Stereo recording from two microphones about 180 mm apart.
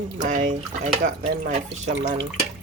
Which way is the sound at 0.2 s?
45° right (ahead or behind).